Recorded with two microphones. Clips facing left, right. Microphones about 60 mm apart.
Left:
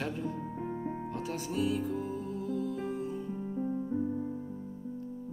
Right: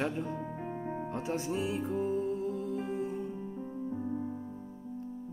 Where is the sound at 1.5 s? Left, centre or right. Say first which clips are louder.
Left 5 dB; right.